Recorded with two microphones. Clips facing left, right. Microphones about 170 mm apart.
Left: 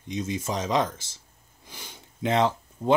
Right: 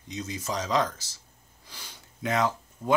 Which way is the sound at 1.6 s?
20° left (ahead or behind).